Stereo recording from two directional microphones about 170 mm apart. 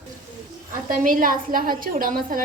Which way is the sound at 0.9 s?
55° right (ahead or behind).